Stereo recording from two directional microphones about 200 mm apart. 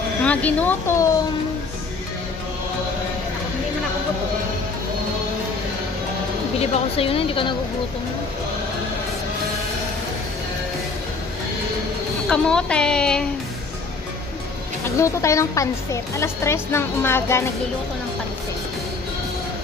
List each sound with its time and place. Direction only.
0.2 s a woman's voice: 5° left (ahead or behind)
6.6 s a woman's voice: 30° left (ahead or behind)
12.3 s a woman's voice: 5° left (ahead or behind)
15.0 s a woman's voice: 15° left (ahead or behind)